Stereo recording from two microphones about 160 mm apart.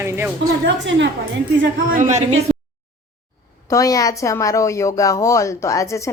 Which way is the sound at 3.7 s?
20° left (ahead or behind).